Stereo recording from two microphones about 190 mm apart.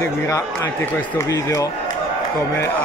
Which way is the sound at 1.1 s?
15° left (ahead or behind).